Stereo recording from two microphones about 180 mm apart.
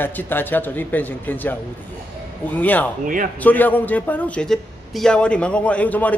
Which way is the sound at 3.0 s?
50° right (ahead or behind).